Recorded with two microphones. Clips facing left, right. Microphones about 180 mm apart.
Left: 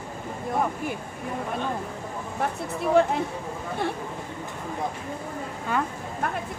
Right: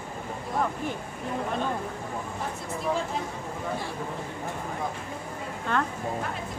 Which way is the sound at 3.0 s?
65° left (ahead or behind).